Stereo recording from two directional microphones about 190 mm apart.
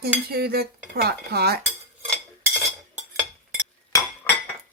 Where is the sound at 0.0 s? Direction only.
55° right (ahead or behind).